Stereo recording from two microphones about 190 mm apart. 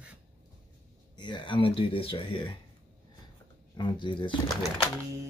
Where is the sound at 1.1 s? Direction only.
25° left (ahead or behind).